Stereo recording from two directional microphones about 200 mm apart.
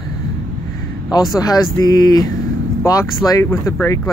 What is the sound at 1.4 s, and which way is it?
Speech, 20° left (ahead or behind).